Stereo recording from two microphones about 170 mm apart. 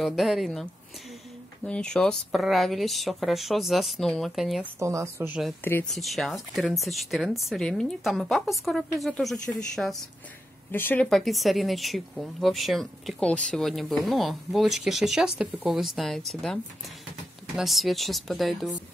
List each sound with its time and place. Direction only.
0.0 s speech: centre (ahead or behind)
1.7 s speech: 5° left (ahead or behind)
4.7 s speech: 15° right (ahead or behind)
5.6 s a woman's voice: 10° left (ahead or behind)
5.9 s speech: centre (ahead or behind)
10.7 s a woman's voice: 10° left (ahead or behind)
11.1 s speech: centre (ahead or behind)
17.6 s speech: centre (ahead or behind)